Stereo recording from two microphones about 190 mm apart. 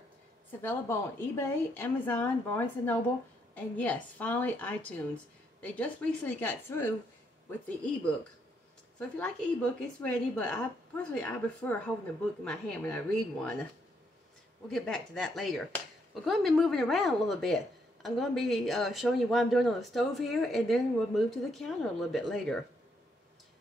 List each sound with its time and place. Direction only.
0.5 s a woman's voice: 10° left (ahead or behind)
9.2 s speech: 5° left (ahead or behind)
14.7 s speech: 5° left (ahead or behind)